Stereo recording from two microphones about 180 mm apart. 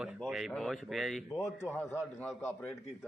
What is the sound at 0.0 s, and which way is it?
Speech, 5° right (ahead or behind).